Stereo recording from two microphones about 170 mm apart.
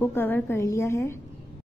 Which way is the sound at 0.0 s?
10° left (ahead or behind).